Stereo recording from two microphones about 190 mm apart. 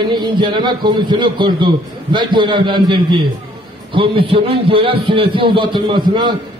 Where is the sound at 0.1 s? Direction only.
25° right (ahead or behind).